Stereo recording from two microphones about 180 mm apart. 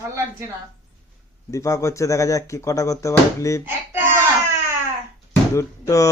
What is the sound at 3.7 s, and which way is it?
Speech, 10° right (ahead or behind).